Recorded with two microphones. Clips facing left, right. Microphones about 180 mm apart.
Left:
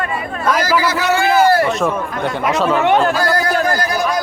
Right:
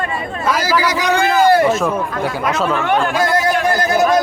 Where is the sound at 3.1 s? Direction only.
20° right (ahead or behind).